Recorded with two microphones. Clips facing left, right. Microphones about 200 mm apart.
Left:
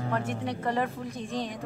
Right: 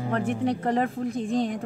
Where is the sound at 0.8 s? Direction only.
55° right (ahead or behind).